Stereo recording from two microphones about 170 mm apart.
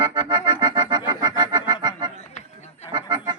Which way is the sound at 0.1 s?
25° right (ahead or behind).